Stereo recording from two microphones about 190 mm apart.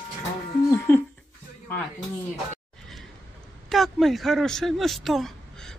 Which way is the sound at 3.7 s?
Centre (ahead or behind).